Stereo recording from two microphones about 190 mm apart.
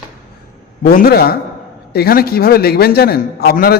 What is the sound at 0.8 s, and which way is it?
A man's voice, 50° left (ahead or behind).